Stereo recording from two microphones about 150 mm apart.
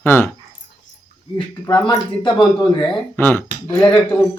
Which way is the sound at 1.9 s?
30° left (ahead or behind).